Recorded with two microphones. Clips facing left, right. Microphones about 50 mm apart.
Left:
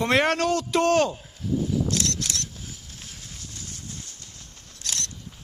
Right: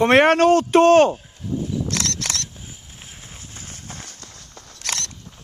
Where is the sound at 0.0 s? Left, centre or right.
Right.